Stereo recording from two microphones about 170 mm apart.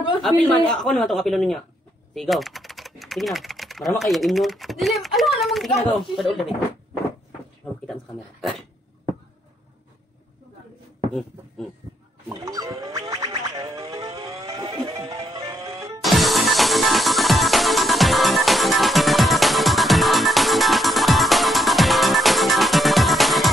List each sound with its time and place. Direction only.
0.2 s speech: 5° left (ahead or behind)
7.8 s speech: 5° left (ahead or behind)
12.3 s music: 20° right (ahead or behind)
16.0 s music: centre (ahead or behind)